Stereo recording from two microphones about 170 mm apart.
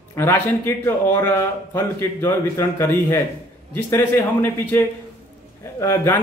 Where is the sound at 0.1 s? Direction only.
15° left (ahead or behind).